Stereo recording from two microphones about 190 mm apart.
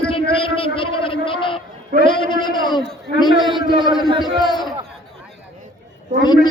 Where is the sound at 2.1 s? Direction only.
25° left (ahead or behind).